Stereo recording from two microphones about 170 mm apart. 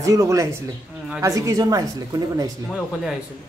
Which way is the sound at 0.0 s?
20° right (ahead or behind).